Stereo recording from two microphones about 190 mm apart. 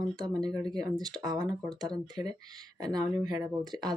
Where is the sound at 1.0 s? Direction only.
20° right (ahead or behind).